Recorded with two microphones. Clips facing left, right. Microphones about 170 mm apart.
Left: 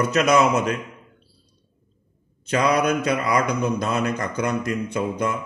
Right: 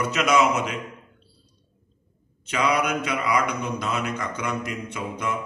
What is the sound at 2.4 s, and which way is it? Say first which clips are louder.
A man's voice: left 4 dB; 40° left (ahead or behind).